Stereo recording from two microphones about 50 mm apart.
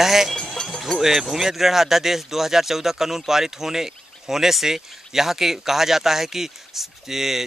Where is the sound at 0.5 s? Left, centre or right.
Centre.